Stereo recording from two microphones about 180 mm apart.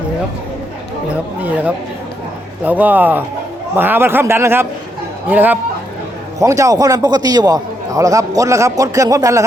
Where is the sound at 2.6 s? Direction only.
10° right (ahead or behind).